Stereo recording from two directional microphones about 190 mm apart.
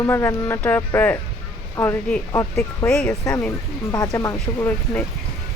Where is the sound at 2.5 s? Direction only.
5° left (ahead or behind).